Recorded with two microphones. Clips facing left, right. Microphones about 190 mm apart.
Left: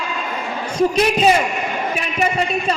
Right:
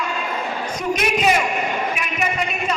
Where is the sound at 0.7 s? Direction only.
30° left (ahead or behind).